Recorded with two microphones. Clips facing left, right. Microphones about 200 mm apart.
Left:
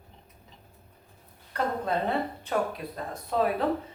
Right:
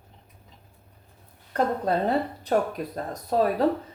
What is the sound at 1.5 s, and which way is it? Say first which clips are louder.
Speech: right 4 dB; 35° right (ahead or behind).